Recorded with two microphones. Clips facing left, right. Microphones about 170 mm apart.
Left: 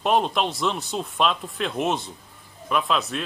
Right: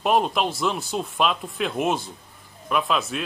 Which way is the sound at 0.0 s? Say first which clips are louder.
Right 1 dB; 5° right (ahead or behind).